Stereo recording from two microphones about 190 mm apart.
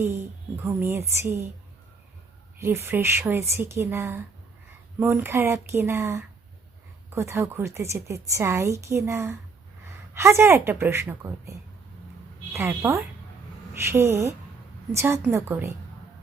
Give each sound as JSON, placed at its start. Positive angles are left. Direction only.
{"t": 0.0, "sound": "a woman's voice", "side_deg": -15}
{"t": 2.6, "sound": "a woman's voice", "side_deg": -15}
{"t": 12.5, "sound": "a woman's voice", "side_deg": -15}